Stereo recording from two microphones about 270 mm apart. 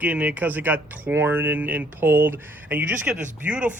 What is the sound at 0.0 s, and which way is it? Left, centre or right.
Speech, centre.